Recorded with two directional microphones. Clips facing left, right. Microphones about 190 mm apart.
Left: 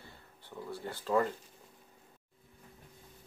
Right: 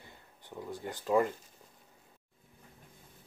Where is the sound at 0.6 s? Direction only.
15° right (ahead or behind).